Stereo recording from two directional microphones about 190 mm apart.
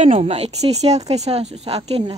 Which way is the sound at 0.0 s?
35° right (ahead or behind).